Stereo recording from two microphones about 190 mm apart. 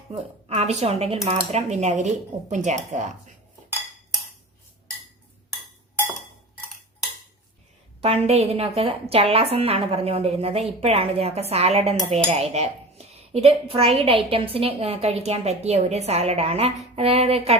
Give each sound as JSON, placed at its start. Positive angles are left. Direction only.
{"t": 0.1, "sound": "dishes", "side_deg": -30}
{"t": 8.0, "sound": "dishes", "side_deg": -35}